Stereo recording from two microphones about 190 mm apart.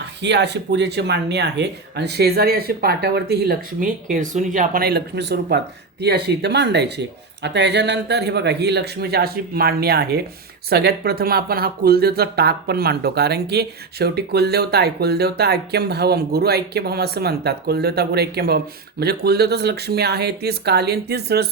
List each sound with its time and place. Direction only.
0.2 s speech: 65° right (ahead or behind)